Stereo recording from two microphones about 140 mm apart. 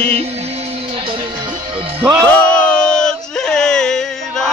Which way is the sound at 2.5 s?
10° left (ahead or behind).